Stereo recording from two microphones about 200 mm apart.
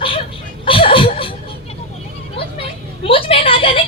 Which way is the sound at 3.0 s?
25° left (ahead or behind).